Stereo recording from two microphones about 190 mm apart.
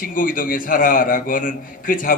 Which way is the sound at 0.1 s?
45° left (ahead or behind).